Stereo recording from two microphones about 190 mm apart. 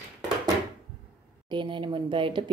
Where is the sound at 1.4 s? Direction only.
25° right (ahead or behind).